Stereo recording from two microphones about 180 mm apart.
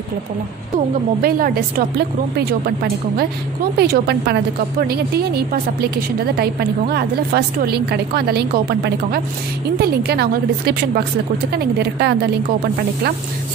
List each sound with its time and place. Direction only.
1.2 s a woman's voice: 55° right (ahead or behind)